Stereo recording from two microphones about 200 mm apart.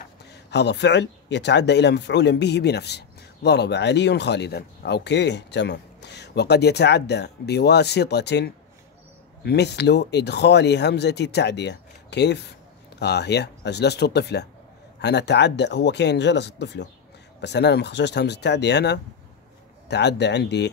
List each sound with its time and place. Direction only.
0.3 s speech: 55° left (ahead or behind)